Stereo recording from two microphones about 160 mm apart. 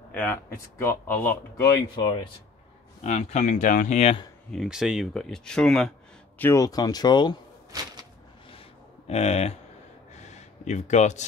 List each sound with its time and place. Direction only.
0.1 s speech: 10° left (ahead or behind)
2.0 s speech: 30° left (ahead or behind)
3.0 s speech: 45° left (ahead or behind)
4.5 s speech: centre (ahead or behind); by 7.3 s 25° left (ahead or behind)
7.7 s a sound: 20° right (ahead or behind)
9.0 s speech: 40° left (ahead or behind)
10.2 s a sound: 45° left (ahead or behind)